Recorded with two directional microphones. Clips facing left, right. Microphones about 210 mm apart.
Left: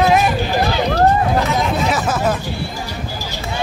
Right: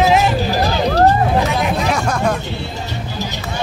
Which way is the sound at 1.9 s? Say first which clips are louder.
Even; 5° left (ahead or behind).